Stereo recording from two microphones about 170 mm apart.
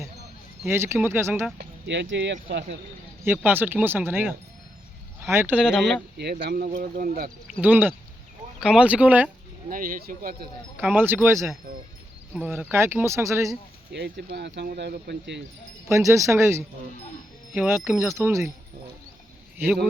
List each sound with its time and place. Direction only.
0.6 s speech: 15° right (ahead or behind)
1.9 s speech: 90° right
3.2 s speech: 10° right (ahead or behind)
6.4 s speech: 60° right (ahead or behind)
7.6 s speech: 10° right (ahead or behind)
9.6 s speech: 55° right (ahead or behind)
10.8 s speech: 10° right (ahead or behind)
13.9 s speech: 80° right
15.9 s speech: 15° right (ahead or behind)
19.5 s speech: 5° right (ahead or behind)